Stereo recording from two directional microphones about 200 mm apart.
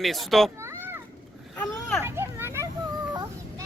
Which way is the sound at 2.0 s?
10° right (ahead or behind).